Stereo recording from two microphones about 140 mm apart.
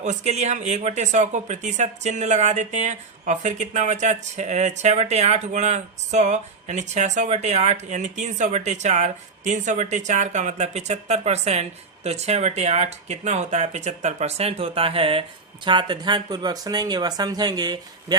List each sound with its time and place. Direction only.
0.0 s speech: 55° right (ahead or behind); by 18.2 s 30° right (ahead or behind)